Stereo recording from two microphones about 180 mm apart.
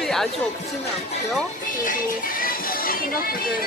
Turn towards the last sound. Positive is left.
turn(degrees=55)  # may be behind; listen again after turning